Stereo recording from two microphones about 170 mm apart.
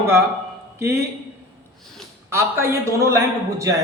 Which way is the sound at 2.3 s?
15° right (ahead or behind).